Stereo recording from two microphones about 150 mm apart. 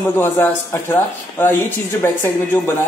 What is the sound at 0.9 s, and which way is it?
Speech, 15° left (ahead or behind).